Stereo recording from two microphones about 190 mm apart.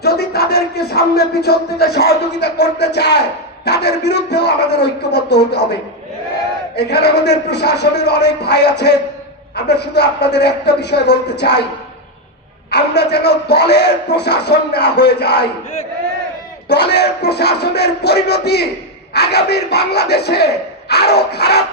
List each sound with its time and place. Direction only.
0.0 s a sound: 55° left (ahead or behind)
3.7 s a man's voice: 60° left (ahead or behind)
6.7 s a man's voice: 60° left (ahead or behind)
12.7 s a man's voice: 60° left (ahead or behind)
16.6 s a man's voice: 60° left (ahead or behind)